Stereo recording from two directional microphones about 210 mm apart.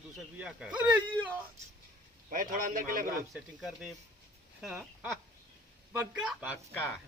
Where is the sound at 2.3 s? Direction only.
40° right (ahead or behind).